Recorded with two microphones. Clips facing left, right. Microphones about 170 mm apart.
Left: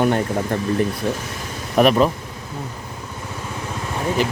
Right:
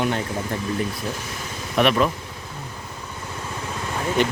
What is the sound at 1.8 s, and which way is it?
Speech, 40° left (ahead or behind).